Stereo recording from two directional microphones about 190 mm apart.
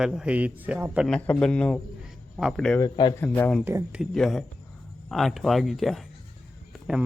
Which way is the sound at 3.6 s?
10° right (ahead or behind).